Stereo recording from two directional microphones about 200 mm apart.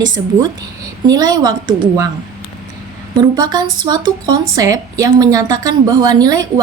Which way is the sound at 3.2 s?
20° right (ahead or behind).